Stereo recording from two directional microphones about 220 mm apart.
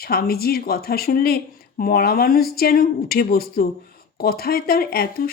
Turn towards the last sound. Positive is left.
turn(degrees=40)  # may be behind; listen again after turning